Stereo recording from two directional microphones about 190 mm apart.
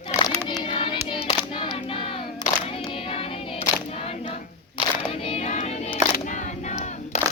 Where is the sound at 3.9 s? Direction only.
30° left (ahead or behind).